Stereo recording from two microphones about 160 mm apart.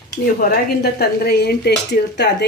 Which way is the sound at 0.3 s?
75° left (ahead or behind).